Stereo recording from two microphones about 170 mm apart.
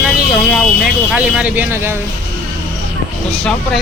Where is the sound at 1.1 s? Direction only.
5° right (ahead or behind).